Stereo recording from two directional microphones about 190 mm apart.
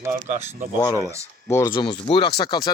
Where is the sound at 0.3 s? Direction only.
40° right (ahead or behind).